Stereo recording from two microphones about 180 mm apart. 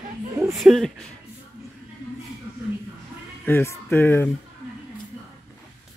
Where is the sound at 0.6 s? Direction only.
Centre (ahead or behind).